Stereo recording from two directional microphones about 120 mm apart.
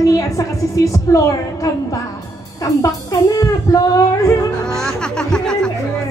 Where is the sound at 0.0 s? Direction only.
25° left (ahead or behind).